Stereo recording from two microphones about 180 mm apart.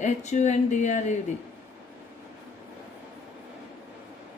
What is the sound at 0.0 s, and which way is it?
Speech, 40° left (ahead or behind).